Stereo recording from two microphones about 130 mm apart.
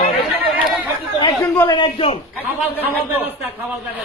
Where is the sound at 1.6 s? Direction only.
40° left (ahead or behind).